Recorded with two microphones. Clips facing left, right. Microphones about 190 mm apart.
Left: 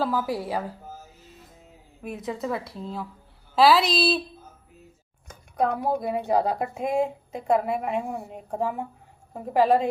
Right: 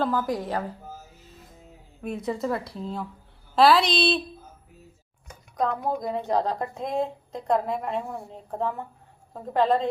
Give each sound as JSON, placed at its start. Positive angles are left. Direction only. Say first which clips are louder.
{"t": 0.0, "sound": "a woman's voice", "louder": "even", "side_deg": 5}
{"t": 2.0, "sound": "speech", "louder": "right 3 dB", "side_deg": 0}
{"t": 5.5, "sound": "a woman's voice", "louder": "left 2 dB", "side_deg": 5}